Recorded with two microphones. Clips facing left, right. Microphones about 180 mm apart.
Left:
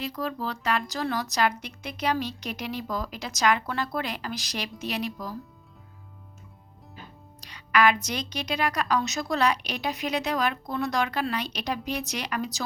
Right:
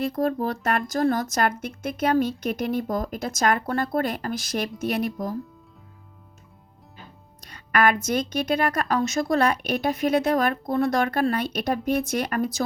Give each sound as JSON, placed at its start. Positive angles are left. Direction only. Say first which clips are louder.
{"t": 0.0, "sound": "speech", "louder": "right 7 dB", "side_deg": -50}
{"t": 7.4, "sound": "speech", "louder": "right 1 dB", "side_deg": -50}